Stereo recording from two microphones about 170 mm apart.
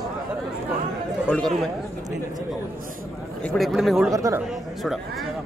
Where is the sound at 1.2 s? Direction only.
10° left (ahead or behind).